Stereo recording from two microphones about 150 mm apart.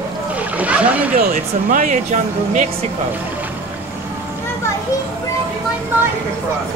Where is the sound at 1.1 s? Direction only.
65° right (ahead or behind).